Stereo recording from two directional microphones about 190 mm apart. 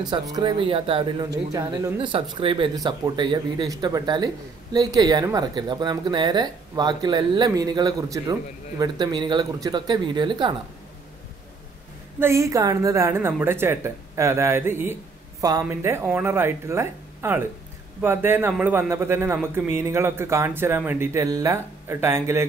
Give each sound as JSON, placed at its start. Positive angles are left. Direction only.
{"t": 0.0, "sound": "speech", "side_deg": -20}
{"t": 12.2, "sound": "a man's voice", "side_deg": -15}